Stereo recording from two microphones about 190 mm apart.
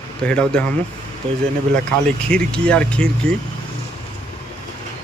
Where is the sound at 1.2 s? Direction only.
30° right (ahead or behind).